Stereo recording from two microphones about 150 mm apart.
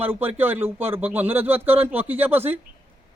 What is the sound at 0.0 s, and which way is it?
Speech, 15° right (ahead or behind).